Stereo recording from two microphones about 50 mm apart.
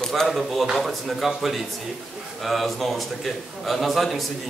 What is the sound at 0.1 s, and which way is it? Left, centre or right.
A man's voice, centre.